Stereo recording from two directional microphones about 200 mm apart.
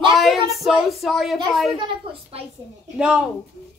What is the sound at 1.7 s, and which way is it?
Speech, 25° right (ahead or behind).